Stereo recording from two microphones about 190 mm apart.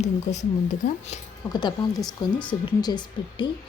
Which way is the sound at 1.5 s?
20° left (ahead or behind).